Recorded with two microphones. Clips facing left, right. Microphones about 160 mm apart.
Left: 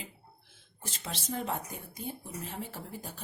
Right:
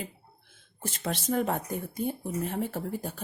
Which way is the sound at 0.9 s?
55° right (ahead or behind).